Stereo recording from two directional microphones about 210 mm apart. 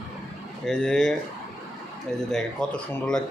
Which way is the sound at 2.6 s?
5° left (ahead or behind).